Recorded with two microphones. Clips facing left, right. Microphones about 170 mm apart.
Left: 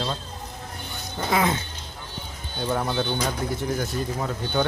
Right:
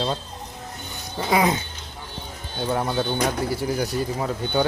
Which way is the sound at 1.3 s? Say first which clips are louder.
Right 3 dB; 15° right (ahead or behind).